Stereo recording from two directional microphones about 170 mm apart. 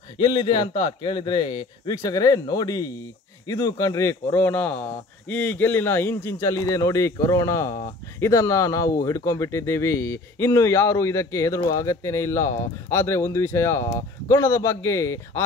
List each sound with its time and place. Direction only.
0.2 s a man's voice: 25° left (ahead or behind)